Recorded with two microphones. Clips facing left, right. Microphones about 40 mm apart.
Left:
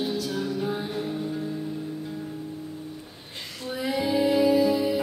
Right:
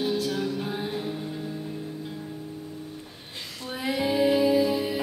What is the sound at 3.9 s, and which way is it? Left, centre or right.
Music, right.